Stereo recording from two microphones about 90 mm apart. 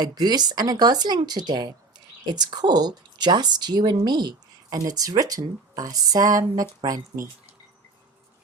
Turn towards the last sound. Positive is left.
turn(degrees=-45)  # may be behind; listen again after turning